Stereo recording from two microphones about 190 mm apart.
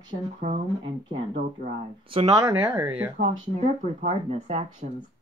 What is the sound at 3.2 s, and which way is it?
Speech, 65° right (ahead or behind).